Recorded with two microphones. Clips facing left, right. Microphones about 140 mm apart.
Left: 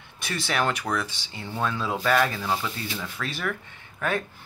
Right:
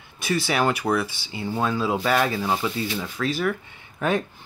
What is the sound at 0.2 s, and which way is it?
Speech, 5° right (ahead or behind).